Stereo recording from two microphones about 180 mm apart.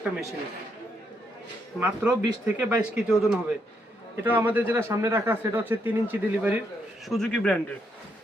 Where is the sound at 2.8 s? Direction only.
5° right (ahead or behind).